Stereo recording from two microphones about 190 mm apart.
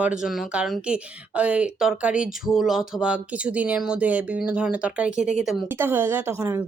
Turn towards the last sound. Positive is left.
turn(degrees=-15)  # may be behind; listen again after turning